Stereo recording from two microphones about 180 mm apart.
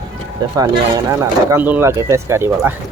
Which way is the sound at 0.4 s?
20° right (ahead or behind).